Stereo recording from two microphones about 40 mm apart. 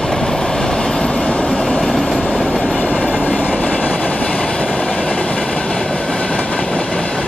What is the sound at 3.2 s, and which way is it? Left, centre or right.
Train, left.